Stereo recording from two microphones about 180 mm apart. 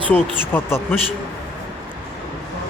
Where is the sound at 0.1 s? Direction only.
10° left (ahead or behind).